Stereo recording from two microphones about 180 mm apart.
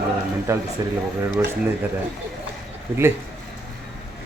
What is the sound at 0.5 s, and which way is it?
Speech, 15° right (ahead or behind).